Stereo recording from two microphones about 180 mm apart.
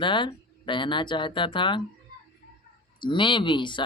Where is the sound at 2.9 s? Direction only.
25° left (ahead or behind).